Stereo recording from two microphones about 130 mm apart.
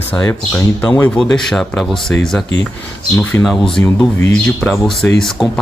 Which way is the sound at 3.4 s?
5° left (ahead or behind).